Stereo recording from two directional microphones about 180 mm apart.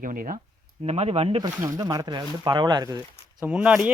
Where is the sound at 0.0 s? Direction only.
50° right (ahead or behind).